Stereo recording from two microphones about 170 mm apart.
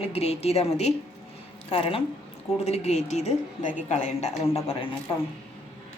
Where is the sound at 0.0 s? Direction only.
35° left (ahead or behind).